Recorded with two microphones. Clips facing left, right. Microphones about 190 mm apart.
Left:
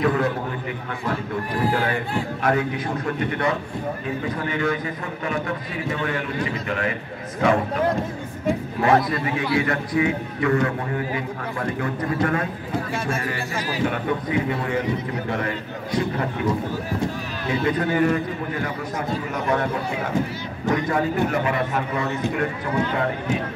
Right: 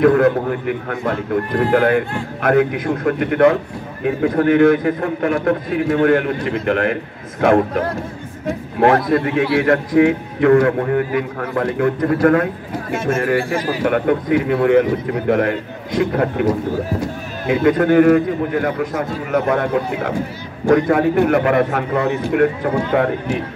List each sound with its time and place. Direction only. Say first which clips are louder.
0.0 s a man's voice: right 9 dB; 60° right (ahead or behind)
8.7 s a man's voice: right 7 dB; 60° right (ahead or behind)
17.5 s a man's voice: right 9 dB; 55° right (ahead or behind)